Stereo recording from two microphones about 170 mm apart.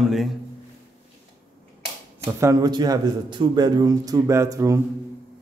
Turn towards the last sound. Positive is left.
turn(degrees=-20)  # may be behind; listen again after turning